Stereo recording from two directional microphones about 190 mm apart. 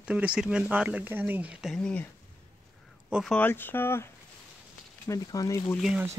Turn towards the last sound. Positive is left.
turn(degrees=0)  # may be behind; listen again after turning